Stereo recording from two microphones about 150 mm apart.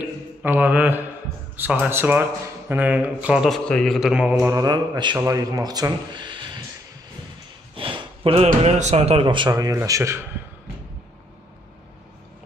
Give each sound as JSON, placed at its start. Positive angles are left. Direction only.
{"t": 0.4, "sound": "speech", "side_deg": -10}
{"t": 4.6, "sound": "a man's voice", "side_deg": -30}
{"t": 7.7, "sound": "a sound", "side_deg": -35}
{"t": 8.6, "sound": "speech", "side_deg": -50}
{"t": 9.5, "sound": "a man's voice", "side_deg": -20}